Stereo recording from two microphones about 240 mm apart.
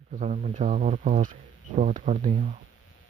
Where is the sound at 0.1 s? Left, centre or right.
Right.